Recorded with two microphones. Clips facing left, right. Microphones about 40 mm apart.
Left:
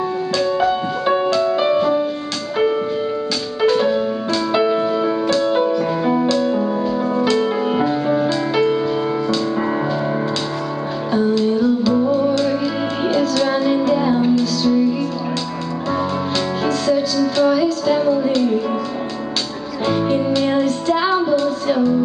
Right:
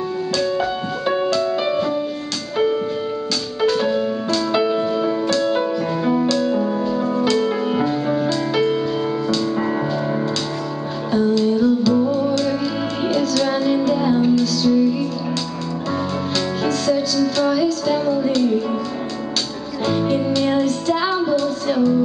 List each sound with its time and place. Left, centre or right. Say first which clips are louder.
0.4 s music: left 5 dB; centre
3.6 s music: left 2 dB; centre
11.1 s music: even; centre
16.6 s music: left 2 dB; centre
19.9 s music: left 2 dB; centre